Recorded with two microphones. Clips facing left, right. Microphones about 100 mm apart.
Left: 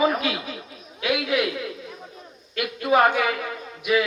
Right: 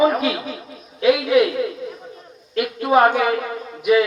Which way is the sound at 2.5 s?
35° right (ahead or behind).